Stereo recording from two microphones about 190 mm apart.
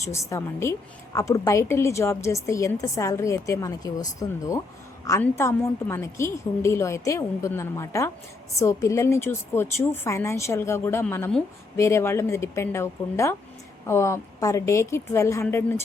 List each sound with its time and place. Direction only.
0.0 s a woman's voice: 15° left (ahead or behind)